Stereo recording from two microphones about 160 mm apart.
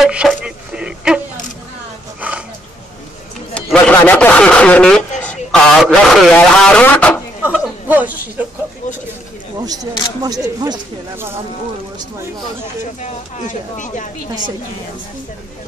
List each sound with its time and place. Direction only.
0.0 s a sound: 5° right (ahead or behind)
3.5 s a man's voice: 10° left (ahead or behind)
7.4 s speech: 10° right (ahead or behind)
10.2 s speech: 25° right (ahead or behind)
13.0 s speech: 50° left (ahead or behind)